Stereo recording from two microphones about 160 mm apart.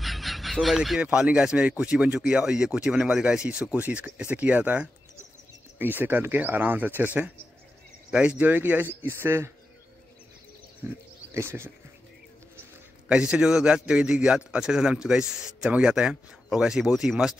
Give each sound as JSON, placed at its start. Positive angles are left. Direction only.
{"t": 0.0, "sound": "speech", "side_deg": 0}
{"t": 8.1, "sound": "speech", "side_deg": -5}
{"t": 10.8, "sound": "speech", "side_deg": -10}
{"t": 13.1, "sound": "speech", "side_deg": -5}